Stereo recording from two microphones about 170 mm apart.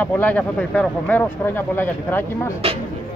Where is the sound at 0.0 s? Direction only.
10° left (ahead or behind).